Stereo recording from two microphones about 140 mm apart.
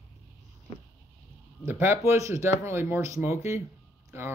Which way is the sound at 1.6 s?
15° right (ahead or behind).